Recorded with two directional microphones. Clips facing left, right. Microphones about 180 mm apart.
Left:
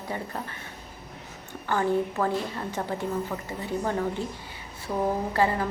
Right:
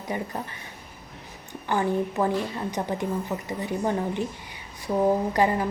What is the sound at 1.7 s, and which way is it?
A woman's voice, 15° right (ahead or behind).